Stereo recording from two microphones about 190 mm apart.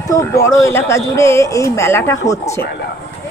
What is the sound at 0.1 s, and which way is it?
Speech, 15° left (ahead or behind).